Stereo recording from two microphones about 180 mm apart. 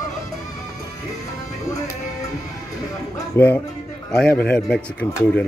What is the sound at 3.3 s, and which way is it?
Speech, 15° left (ahead or behind).